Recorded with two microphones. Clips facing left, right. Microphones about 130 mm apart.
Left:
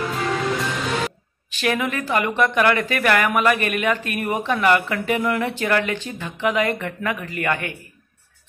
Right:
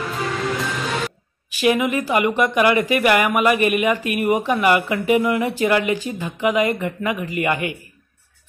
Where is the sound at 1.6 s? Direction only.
10° right (ahead or behind).